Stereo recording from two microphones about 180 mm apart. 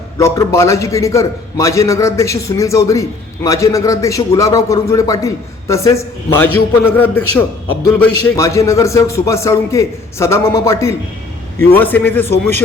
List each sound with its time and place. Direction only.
0.2 s a man's voice: 15° left (ahead or behind)